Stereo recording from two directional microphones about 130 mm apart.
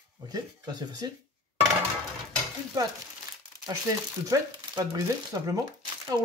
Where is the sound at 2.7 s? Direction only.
30° right (ahead or behind).